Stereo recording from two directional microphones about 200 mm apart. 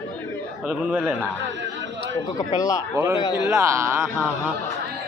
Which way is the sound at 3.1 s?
20° left (ahead or behind).